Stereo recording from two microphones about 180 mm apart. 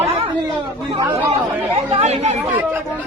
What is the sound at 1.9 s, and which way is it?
Speech, 35° right (ahead or behind).